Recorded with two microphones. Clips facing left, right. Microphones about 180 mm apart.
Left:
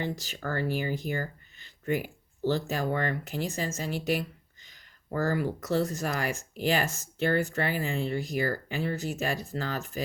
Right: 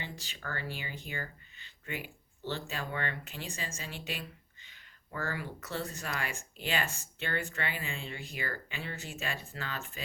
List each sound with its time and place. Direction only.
0.0 s speech: 40° left (ahead or behind)
1.0 s a sound: 40° left (ahead or behind)
2.4 s speech: 40° left (ahead or behind)